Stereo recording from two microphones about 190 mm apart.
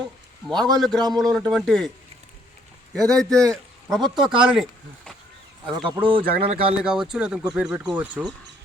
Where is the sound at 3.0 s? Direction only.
20° right (ahead or behind).